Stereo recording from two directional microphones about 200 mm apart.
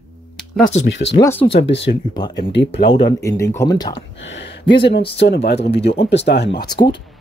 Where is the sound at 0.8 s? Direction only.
65° left (ahead or behind).